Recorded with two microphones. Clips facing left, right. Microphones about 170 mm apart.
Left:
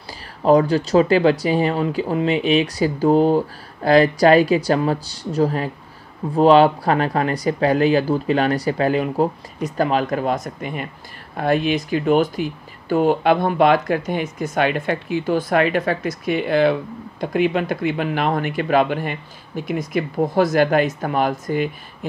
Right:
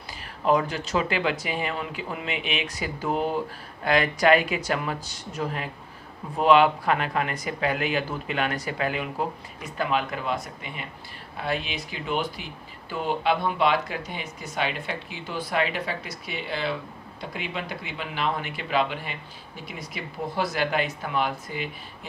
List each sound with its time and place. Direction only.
0.4 s speech: 35° left (ahead or behind)